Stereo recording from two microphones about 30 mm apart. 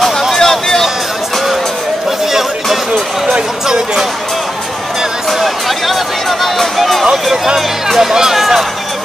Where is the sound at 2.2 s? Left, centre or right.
Centre.